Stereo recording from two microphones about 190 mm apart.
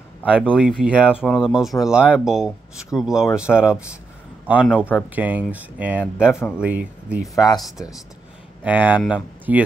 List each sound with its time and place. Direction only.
0.5 s speech: 5° right (ahead or behind)
7.3 s speech: 20° left (ahead or behind)
8.6 s speech: 10° right (ahead or behind)